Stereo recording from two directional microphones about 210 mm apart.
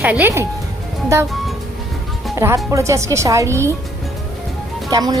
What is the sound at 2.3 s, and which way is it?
Speech, 10° right (ahead or behind).